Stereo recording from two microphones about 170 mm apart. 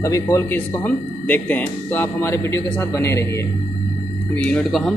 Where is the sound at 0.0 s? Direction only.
15° left (ahead or behind).